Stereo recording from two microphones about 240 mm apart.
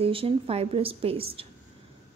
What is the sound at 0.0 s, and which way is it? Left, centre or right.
Speech, right.